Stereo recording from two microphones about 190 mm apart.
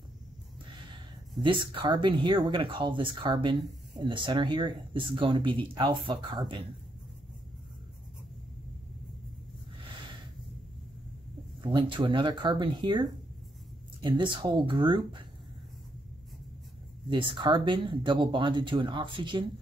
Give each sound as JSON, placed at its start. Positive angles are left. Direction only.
{"t": 1.4, "sound": "speech", "side_deg": -25}
{"t": 11.6, "sound": "speech", "side_deg": -25}
{"t": 14.0, "sound": "speech", "side_deg": -25}
{"t": 17.1, "sound": "speech", "side_deg": -25}